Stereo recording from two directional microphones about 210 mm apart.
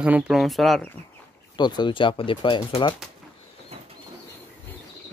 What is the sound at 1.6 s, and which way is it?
Speech, 20° left (ahead or behind).